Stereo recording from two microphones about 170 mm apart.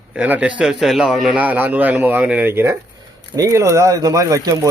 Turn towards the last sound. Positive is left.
turn(degrees=-20)  # may be behind; listen again after turning